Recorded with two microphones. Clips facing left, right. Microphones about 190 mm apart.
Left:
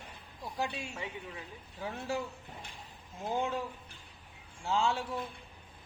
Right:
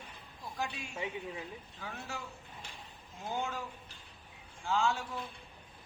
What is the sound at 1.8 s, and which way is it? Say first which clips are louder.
Speech: left 9 dB; 30° left (ahead or behind).